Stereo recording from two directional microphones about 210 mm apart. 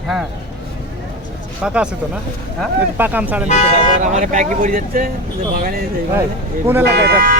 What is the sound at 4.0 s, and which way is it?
Speech, 35° right (ahead or behind).